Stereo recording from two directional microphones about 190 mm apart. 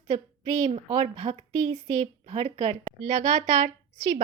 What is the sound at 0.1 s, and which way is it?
A woman's voice, 40° right (ahead or behind).